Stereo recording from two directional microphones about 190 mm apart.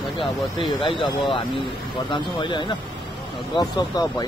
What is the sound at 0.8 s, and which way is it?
Speech, 25° left (ahead or behind).